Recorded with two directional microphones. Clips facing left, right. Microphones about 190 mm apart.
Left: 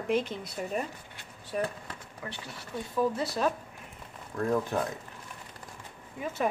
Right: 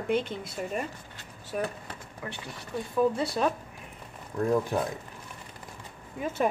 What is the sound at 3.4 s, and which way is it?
Speech, 15° right (ahead or behind).